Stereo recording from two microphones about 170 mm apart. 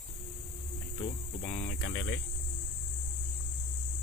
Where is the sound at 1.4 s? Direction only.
60° left (ahead or behind).